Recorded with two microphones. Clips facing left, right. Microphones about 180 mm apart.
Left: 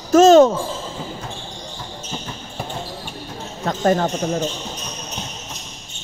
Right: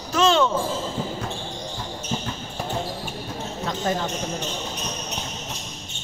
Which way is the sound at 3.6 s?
55° left (ahead or behind).